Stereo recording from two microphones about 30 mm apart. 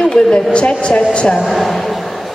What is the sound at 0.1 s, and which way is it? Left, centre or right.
A woman's voice, left.